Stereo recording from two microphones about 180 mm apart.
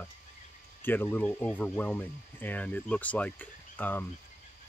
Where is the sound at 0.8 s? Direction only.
10° left (ahead or behind).